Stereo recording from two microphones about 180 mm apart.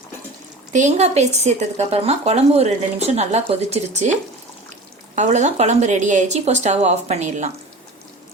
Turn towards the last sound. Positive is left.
turn(degrees=-40)  # may be behind; listen again after turning